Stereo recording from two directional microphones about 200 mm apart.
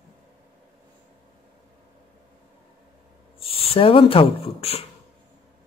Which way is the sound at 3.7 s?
25° left (ahead or behind).